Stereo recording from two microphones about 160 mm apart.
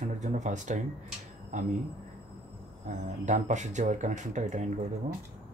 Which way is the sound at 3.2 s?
50° right (ahead or behind).